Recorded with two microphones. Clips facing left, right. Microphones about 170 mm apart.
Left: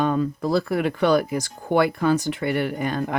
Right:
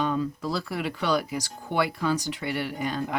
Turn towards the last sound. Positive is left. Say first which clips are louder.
# left 5 dB
turn(degrees=55)  # may be behind; listen again after turning